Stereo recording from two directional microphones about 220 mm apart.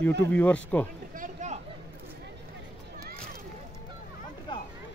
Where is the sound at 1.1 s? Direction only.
35° right (ahead or behind).